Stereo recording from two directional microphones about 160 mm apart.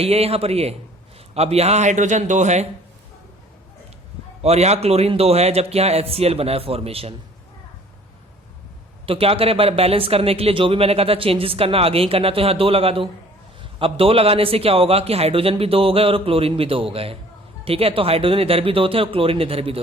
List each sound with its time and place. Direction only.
0.0 s a man's voice: 40° right (ahead or behind)
4.4 s speech: 40° right (ahead or behind)
9.0 s speech: 35° right (ahead or behind)